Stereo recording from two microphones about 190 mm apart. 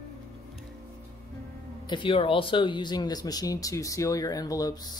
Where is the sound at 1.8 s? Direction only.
25° left (ahead or behind).